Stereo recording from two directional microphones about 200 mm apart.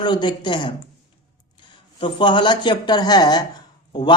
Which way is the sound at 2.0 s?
25° left (ahead or behind).